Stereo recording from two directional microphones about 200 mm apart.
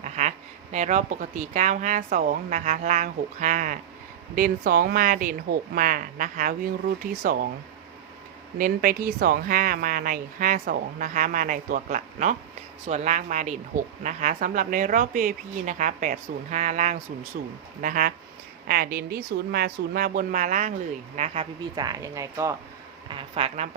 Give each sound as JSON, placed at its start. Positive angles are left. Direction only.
{"t": 0.0, "sound": "a woman's voice", "side_deg": -35}
{"t": 8.5, "sound": "a woman's voice", "side_deg": -45}
{"t": 21.2, "sound": "speech", "side_deg": -25}
{"t": 23.0, "sound": "speech", "side_deg": -25}